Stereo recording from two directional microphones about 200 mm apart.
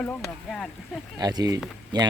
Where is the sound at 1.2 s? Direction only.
20° right (ahead or behind).